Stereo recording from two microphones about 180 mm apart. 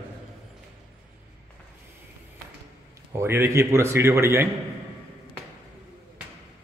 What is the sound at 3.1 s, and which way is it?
Speech, 15° right (ahead or behind).